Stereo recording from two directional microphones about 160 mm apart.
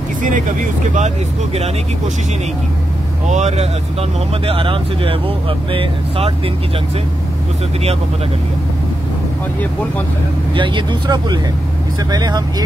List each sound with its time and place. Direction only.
0.2 s speech: 55° right (ahead or behind)
3.3 s speech: 45° right (ahead or behind)
4.5 s speech: 35° right (ahead or behind)
10.5 s speech: 30° right (ahead or behind)